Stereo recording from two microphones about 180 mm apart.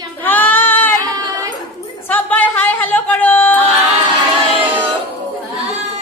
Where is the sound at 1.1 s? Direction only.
20° right (ahead or behind).